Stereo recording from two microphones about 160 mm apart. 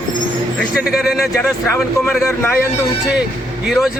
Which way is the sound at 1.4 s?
15° left (ahead or behind).